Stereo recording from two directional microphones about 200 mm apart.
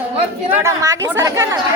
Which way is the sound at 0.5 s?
15° right (ahead or behind).